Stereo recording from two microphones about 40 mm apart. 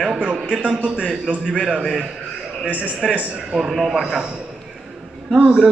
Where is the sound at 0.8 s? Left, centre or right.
Left.